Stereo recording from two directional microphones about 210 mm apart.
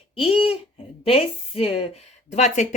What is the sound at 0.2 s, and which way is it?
Speech, 25° left (ahead or behind).